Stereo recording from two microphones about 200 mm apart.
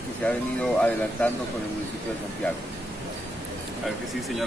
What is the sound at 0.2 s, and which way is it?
Speech, 5° left (ahead or behind).